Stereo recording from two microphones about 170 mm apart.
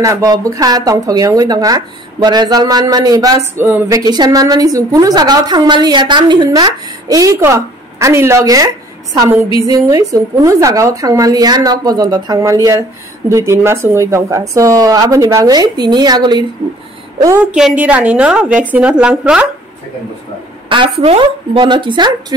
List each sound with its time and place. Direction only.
0.0 s speech: 20° right (ahead or behind)
9.7 s speech: 20° right (ahead or behind)
17.5 s a woman's voice: 5° right (ahead or behind)
20.6 s a sound: 30° right (ahead or behind)
21.0 s speech: 35° right (ahead or behind)